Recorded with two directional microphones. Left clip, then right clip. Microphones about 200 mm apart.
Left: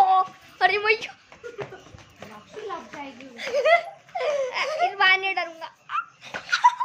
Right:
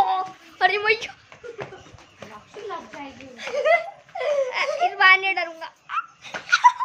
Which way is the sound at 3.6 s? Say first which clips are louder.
Even; 40° left (ahead or behind).